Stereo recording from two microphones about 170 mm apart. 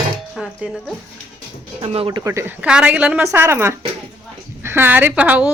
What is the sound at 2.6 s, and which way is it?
A woman's voice, 5° right (ahead or behind).